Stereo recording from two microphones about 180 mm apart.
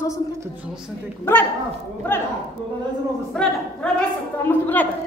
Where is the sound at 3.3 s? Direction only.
5° left (ahead or behind).